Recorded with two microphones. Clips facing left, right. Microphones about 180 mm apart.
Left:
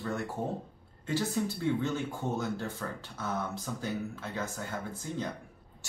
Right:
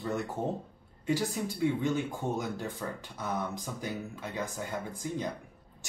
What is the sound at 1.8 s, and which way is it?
Speech, 15° right (ahead or behind).